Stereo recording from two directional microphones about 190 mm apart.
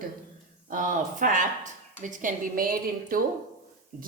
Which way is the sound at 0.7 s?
45° right (ahead or behind).